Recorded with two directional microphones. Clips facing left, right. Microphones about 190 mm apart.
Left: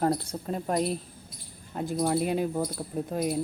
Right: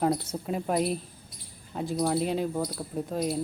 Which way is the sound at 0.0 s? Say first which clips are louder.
Even; 5° right (ahead or behind).